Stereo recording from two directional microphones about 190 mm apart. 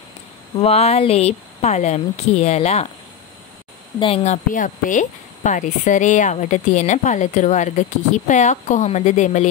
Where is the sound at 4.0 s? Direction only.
35° left (ahead or behind).